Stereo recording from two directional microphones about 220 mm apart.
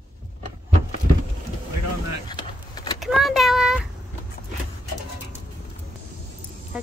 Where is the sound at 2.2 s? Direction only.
20° left (ahead or behind).